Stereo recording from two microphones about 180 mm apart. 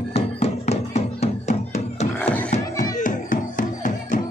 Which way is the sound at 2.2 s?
10° left (ahead or behind).